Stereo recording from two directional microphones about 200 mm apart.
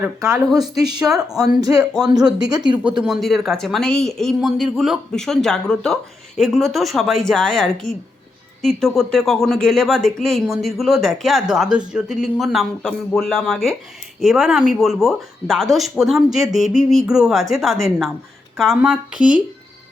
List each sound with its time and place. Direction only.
0.0 s speech: 15° right (ahead or behind)
3.0 s speech: centre (ahead or behind)